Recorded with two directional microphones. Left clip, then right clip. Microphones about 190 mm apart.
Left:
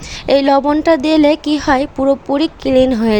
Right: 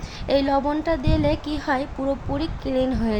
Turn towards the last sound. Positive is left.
turn(degrees=45)  # may be behind; listen again after turning